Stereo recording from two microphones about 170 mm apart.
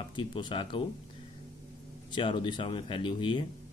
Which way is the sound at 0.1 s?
30° left (ahead or behind).